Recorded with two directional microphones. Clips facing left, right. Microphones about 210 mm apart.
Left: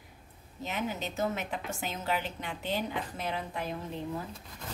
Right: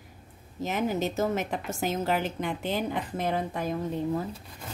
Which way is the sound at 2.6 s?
50° right (ahead or behind).